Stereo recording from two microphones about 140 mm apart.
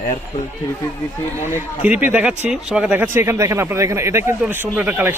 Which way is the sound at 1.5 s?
10° right (ahead or behind).